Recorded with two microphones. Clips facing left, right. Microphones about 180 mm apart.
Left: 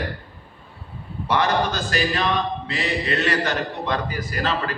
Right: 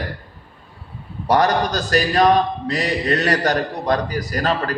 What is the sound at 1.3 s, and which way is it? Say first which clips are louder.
A man's voice: right 4 dB; 40° right (ahead or behind).